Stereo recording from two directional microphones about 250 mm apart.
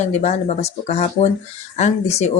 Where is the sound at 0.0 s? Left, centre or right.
Left.